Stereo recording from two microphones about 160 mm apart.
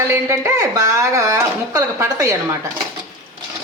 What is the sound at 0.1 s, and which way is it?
A woman's voice, 20° right (ahead or behind).